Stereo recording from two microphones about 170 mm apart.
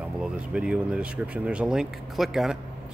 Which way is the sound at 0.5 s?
5° right (ahead or behind).